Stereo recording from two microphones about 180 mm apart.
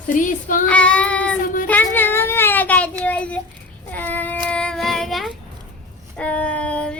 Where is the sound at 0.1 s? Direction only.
45° left (ahead or behind).